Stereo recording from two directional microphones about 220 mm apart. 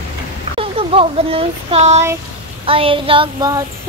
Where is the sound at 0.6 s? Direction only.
25° right (ahead or behind).